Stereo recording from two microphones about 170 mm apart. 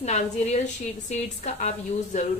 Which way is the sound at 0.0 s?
40° left (ahead or behind).